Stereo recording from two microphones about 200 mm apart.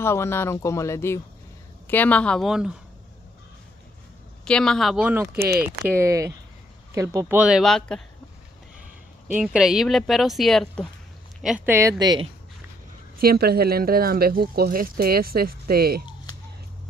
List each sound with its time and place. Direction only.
0.0 s speech: 10° left (ahead or behind)
4.5 s speech: 5° left (ahead or behind)
5.4 s speech: 50° right (ahead or behind)
5.9 s speech: 15° right (ahead or behind); by 8.0 s centre (ahead or behind)
9.3 s speech: 5° right (ahead or behind); by 12.3 s 20° right (ahead or behind)
13.2 s speech: 50° right (ahead or behind)